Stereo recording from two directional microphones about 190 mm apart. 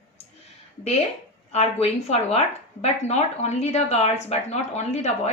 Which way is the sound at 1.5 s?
35° left (ahead or behind).